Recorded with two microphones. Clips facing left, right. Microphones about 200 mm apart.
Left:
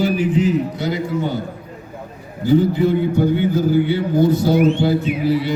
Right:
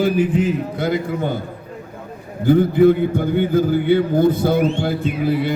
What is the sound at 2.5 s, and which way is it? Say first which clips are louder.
A man's voice: right 3 dB; 55° right (ahead or behind).